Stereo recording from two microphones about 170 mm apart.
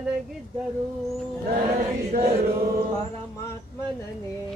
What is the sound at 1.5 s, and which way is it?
Chant, 55° right (ahead or behind).